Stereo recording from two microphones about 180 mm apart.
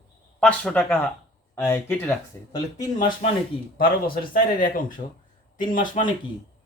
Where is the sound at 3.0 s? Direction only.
25° left (ahead or behind).